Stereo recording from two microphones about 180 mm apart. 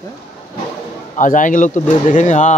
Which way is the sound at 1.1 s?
45° left (ahead or behind).